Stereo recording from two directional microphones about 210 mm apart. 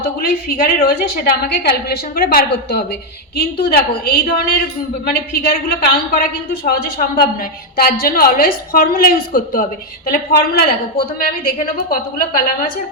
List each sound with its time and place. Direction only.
0.2 s a woman's voice: 45° left (ahead or behind)